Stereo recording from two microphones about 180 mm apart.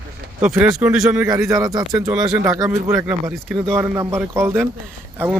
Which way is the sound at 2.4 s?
15° right (ahead or behind).